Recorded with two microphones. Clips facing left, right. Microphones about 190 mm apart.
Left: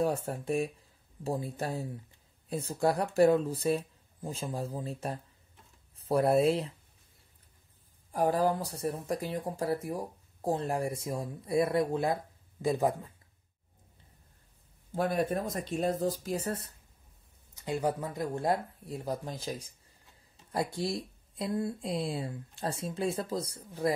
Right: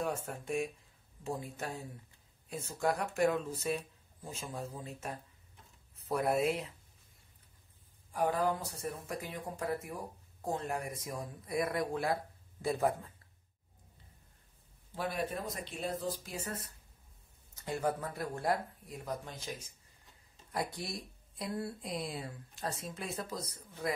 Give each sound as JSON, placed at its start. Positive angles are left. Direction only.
{"t": 0.0, "sound": "speech", "side_deg": 35}
{"t": 8.1, "sound": "speech", "side_deg": 35}
{"t": 15.0, "sound": "speech", "side_deg": 45}
{"t": 17.6, "sound": "speech", "side_deg": 15}